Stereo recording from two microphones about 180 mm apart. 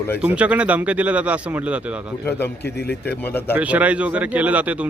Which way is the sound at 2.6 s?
65° left (ahead or behind).